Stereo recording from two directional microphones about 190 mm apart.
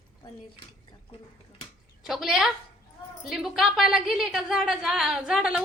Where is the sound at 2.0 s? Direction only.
Centre (ahead or behind).